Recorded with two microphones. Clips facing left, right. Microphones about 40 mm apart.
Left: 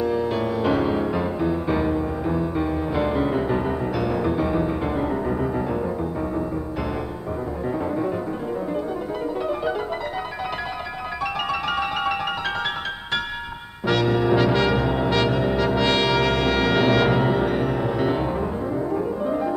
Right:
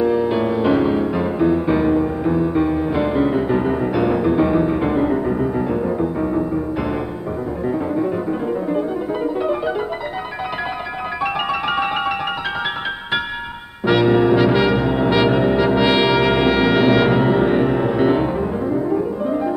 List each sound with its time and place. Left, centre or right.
0.0 s music: centre
7.6 s music: centre
8.7 s music: centre
11.7 s music: centre
13.8 s brass instrument: centre